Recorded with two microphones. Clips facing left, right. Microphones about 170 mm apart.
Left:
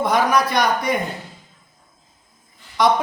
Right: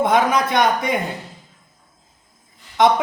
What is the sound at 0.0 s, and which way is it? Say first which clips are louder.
Speech: right 1 dB; 20° right (ahead or behind).